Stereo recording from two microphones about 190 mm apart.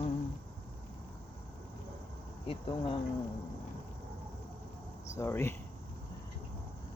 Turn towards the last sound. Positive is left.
turn(degrees=15)  # may be behind; listen again after turning